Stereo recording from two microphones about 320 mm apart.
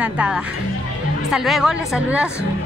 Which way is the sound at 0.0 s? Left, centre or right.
Centre.